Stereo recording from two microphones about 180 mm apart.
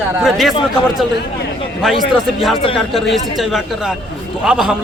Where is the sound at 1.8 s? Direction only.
5° right (ahead or behind).